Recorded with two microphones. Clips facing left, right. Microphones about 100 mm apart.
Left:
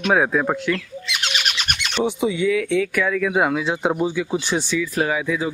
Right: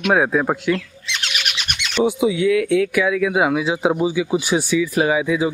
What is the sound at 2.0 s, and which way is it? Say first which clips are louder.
Speech: right 3 dB; centre (ahead or behind).